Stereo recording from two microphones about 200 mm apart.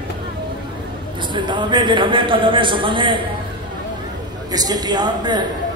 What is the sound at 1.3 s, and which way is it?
A man's voice, 25° right (ahead or behind).